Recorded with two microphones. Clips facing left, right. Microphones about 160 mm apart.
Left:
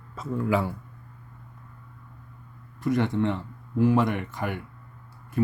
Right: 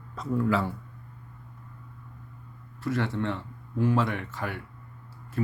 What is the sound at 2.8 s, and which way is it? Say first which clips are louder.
Speech: left 4 dB; 15° left (ahead or behind).